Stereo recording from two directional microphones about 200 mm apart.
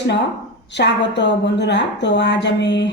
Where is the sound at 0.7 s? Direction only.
60° left (ahead or behind).